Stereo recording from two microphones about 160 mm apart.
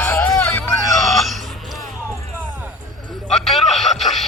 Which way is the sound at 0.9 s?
Centre (ahead or behind).